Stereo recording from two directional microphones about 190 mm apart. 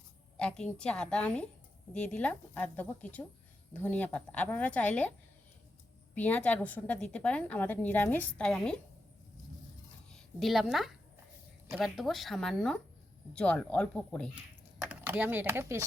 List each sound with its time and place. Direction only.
0.3 s a woman's voice: 5° left (ahead or behind)
6.1 s a woman's voice: 10° left (ahead or behind)
10.1 s a woman's voice: centre (ahead or behind)
14.8 s speech: 10° right (ahead or behind)